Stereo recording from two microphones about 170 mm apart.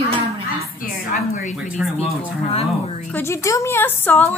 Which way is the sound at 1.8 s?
5° right (ahead or behind).